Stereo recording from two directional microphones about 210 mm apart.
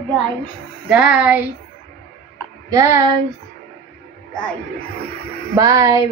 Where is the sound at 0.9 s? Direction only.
5° right (ahead or behind).